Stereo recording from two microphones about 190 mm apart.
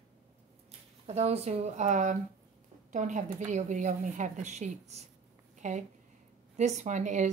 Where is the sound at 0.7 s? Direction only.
35° right (ahead or behind).